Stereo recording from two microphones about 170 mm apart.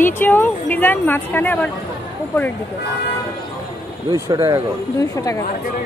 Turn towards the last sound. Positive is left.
turn(degrees=20)  # may be behind; listen again after turning